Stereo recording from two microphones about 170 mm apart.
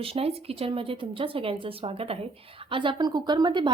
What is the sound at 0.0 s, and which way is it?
A woman's voice, 35° right (ahead or behind).